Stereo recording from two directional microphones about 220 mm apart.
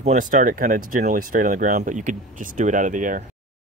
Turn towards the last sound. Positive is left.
turn(degrees=-35)  # may be behind; listen again after turning